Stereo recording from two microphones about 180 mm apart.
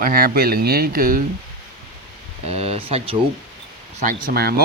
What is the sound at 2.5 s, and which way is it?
Speech, 35° right (ahead or behind).